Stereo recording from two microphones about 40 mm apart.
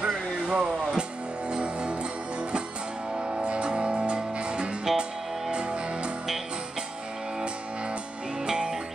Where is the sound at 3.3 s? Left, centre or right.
Right.